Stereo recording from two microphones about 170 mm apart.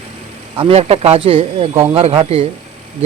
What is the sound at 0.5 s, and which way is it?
Speech, 35° right (ahead or behind).